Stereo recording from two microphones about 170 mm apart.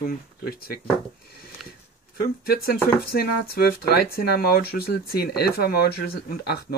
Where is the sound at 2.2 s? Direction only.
65° left (ahead or behind).